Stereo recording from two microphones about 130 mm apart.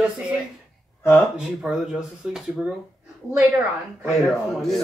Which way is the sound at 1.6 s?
5° right (ahead or behind).